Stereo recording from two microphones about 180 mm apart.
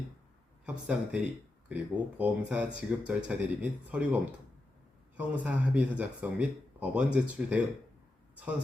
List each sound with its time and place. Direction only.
0.6 s speech: 5° right (ahead or behind)